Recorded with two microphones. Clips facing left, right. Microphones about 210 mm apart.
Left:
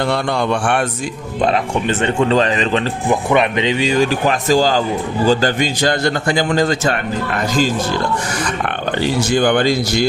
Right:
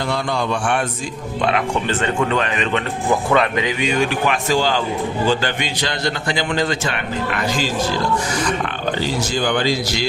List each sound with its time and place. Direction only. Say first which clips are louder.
0.1 s a man's voice: left 4 dB; 60° left (ahead or behind)
1.4 s a man's voice: left 3 dB; 35° left (ahead or behind)
1.9 s speech: left 6 dB; 20° left (ahead or behind)
2.3 s a man's voice: left 5 dB; 30° left (ahead or behind)
3.1 s a man's voice: left 2 dB; 20° left (ahead or behind); by 7.7 s 40° left (ahead or behind)
9.0 s a man's voice: left 7 dB; 55° left (ahead or behind)